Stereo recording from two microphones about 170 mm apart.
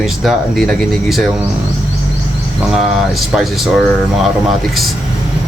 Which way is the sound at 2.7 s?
5° right (ahead or behind).